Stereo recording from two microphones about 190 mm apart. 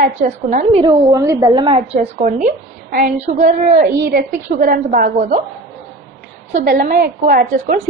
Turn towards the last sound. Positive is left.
turn(degrees=-50)  # may be behind; listen again after turning